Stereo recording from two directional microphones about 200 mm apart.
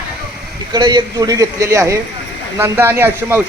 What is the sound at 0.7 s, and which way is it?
A man's voice, 20° right (ahead or behind).